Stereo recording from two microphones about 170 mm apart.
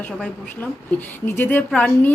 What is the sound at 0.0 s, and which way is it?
A woman's voice, 10° left (ahead or behind).